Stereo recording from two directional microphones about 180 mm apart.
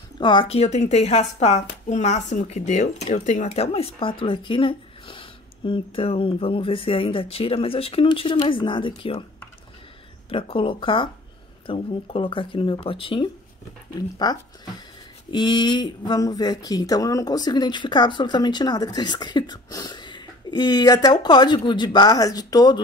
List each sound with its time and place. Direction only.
0.2 s speech: 25° left (ahead or behind)
10.3 s speech: 30° left (ahead or behind)